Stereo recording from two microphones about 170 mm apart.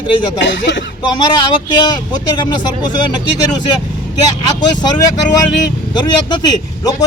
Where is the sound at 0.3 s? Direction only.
90° left.